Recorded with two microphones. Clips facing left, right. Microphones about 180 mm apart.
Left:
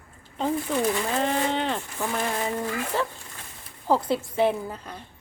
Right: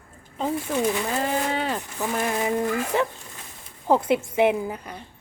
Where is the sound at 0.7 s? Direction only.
15° right (ahead or behind).